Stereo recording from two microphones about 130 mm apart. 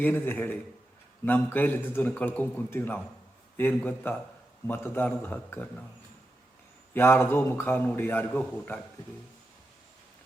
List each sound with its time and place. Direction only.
0.0 s a man's voice: 15° left (ahead or behind)
6.9 s a man's voice: 20° left (ahead or behind)